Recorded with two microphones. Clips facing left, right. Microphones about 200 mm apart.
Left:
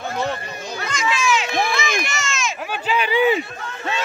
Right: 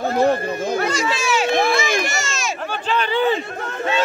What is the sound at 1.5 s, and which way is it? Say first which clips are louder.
Run: right 4 dB; 30° right (ahead or behind).